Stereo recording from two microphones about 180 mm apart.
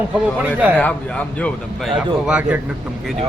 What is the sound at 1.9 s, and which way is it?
Speech, 5° right (ahead or behind).